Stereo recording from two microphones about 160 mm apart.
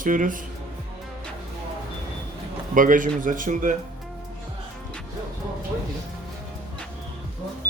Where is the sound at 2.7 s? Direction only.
55° right (ahead or behind).